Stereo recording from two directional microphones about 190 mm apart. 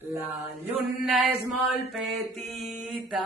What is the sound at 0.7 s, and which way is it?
Mantra, centre (ahead or behind).